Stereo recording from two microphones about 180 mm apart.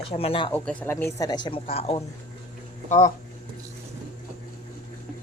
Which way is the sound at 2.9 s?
45° left (ahead or behind).